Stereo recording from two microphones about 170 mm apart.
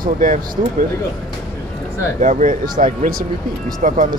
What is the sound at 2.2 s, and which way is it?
Speech, 50° right (ahead or behind).